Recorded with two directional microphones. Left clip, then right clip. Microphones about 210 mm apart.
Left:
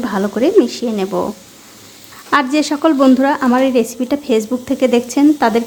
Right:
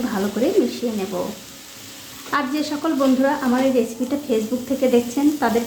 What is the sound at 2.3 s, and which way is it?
Speech, 45° left (ahead or behind).